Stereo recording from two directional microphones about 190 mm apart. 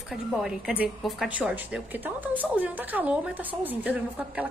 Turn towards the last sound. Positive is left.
turn(degrees=-10)  # may be behind; listen again after turning